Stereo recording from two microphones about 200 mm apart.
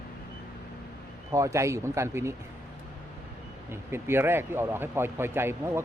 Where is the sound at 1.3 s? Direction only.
15° right (ahead or behind).